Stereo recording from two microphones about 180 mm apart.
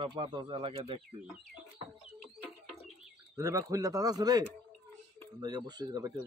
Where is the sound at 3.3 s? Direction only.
15° right (ahead or behind).